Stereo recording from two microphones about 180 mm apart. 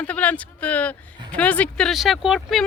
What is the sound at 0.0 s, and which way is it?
Speech, 10° left (ahead or behind).